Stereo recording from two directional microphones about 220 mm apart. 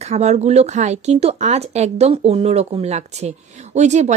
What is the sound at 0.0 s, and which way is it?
Speech, 30° right (ahead or behind).